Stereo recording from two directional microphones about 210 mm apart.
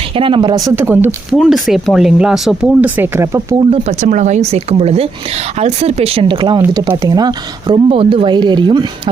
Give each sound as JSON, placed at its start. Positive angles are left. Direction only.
{"t": 0.1, "sound": "speech", "side_deg": -25}
{"t": 3.7, "sound": "speech", "side_deg": -35}